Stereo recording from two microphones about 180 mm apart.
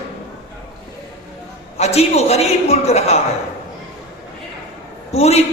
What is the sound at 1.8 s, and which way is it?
A man's voice, 35° left (ahead or behind).